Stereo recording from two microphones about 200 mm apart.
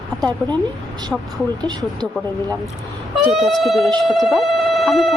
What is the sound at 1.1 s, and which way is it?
Speech, 5° right (ahead or behind).